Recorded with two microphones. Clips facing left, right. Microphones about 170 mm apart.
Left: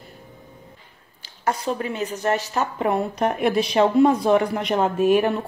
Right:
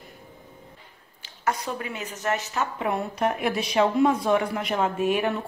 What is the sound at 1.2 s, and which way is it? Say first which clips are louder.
Speech: left 3 dB; 30° left (ahead or behind).